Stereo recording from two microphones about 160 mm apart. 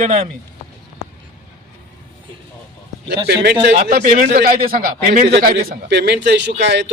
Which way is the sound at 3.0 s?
90° right.